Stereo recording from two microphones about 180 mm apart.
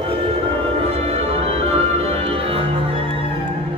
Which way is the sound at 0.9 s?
35° right (ahead or behind).